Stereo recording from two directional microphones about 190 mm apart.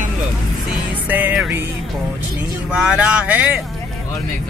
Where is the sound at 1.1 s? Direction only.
10° right (ahead or behind).